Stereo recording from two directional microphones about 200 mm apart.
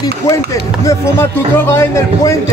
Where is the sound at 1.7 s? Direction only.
15° left (ahead or behind).